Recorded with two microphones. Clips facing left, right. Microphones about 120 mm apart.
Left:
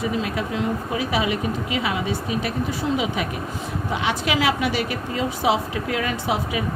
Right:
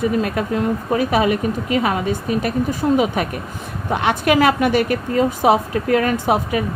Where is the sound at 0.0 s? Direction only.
50° right (ahead or behind).